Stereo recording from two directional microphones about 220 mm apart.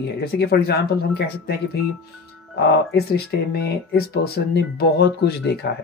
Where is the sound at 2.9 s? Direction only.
45° left (ahead or behind).